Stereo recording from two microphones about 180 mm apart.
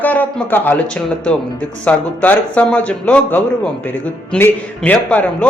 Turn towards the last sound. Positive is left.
turn(degrees=10)  # may be behind; listen again after turning